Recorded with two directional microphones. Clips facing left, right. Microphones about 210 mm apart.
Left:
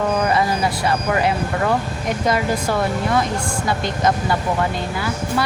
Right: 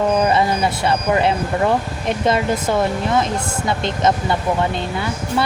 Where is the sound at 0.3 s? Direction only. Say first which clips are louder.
Right 2 dB; 25° right (ahead or behind).